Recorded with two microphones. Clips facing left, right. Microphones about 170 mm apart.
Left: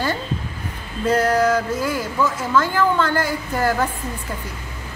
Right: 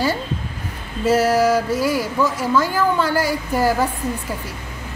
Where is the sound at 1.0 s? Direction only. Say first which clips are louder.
Right 2 dB; 5° right (ahead or behind).